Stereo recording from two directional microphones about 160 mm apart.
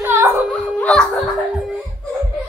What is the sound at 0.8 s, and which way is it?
Music, 5° left (ahead or behind).